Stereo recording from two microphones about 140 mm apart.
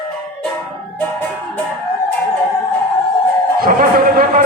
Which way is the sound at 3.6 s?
85° right.